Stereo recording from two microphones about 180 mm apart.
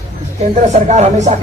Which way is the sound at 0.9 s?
40° right (ahead or behind).